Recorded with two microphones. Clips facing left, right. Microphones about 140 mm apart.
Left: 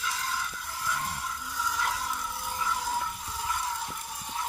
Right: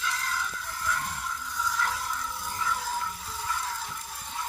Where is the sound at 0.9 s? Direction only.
15° left (ahead or behind).